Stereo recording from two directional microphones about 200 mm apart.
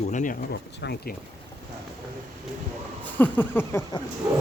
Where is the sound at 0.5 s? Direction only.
55° left (ahead or behind).